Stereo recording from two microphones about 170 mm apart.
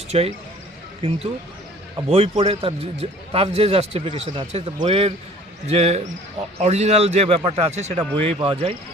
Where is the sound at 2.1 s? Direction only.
35° right (ahead or behind).